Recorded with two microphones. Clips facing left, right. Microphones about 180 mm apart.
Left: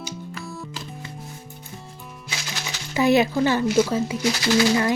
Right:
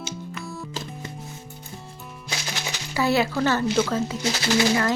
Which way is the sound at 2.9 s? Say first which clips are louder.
Left 4 dB; 20° left (ahead or behind).